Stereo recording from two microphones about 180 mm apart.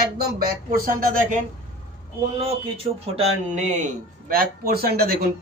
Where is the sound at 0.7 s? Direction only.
50° right (ahead or behind).